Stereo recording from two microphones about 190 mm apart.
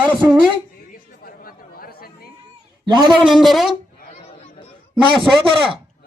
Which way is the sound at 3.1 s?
Centre (ahead or behind).